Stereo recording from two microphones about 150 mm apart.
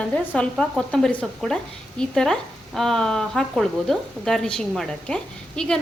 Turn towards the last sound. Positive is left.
turn(degrees=5)  # may be behind; listen again after turning